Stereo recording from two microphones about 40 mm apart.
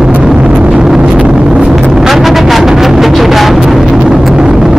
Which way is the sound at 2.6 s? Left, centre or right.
Centre.